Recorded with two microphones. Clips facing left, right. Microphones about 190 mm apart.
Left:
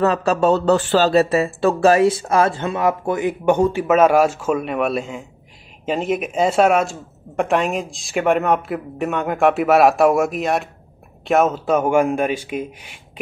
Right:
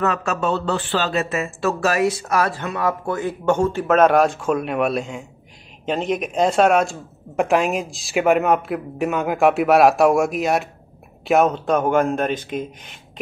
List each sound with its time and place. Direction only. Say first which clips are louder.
0.0 s a man's voice: left 5 dB; 35° left (ahead or behind); by 13.0 s 10° left (ahead or behind)